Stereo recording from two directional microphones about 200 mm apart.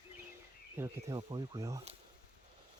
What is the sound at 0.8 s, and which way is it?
Speech, 20° right (ahead or behind).